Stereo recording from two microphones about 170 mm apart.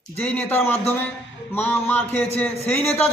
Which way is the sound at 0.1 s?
10° left (ahead or behind).